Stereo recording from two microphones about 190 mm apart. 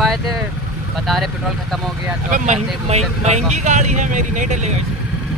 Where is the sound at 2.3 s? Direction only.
35° right (ahead or behind).